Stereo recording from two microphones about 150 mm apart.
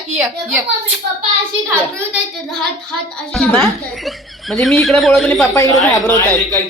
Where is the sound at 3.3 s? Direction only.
Centre (ahead or behind).